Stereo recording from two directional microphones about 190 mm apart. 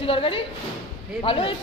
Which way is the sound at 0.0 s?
30° left (ahead or behind).